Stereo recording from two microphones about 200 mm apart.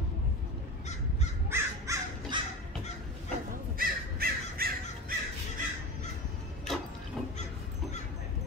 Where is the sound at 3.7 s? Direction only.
45° right (ahead or behind).